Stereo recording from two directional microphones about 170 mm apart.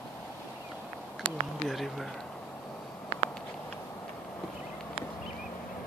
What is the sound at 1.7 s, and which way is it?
Speech, centre (ahead or behind).